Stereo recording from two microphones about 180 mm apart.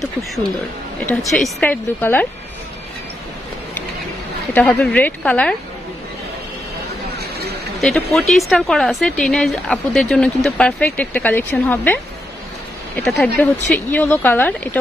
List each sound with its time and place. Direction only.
1.0 s a woman's voice: 5° left (ahead or behind)
4.6 s a woman's voice: 10° left (ahead or behind)
7.2 s a sound: 65° right (ahead or behind)
7.8 s a woman's voice: centre (ahead or behind)